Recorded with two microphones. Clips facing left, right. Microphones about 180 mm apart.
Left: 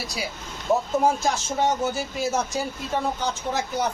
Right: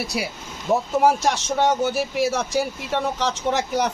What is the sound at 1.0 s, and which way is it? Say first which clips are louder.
Speech: right 3 dB; 75° right (ahead or behind).